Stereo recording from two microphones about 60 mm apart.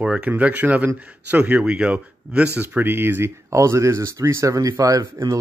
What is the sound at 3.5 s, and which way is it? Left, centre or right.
Speech, right.